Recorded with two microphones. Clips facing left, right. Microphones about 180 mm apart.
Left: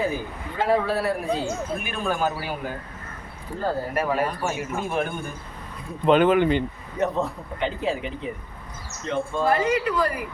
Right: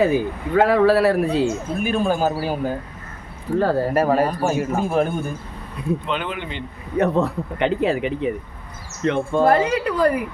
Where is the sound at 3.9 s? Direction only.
40° right (ahead or behind).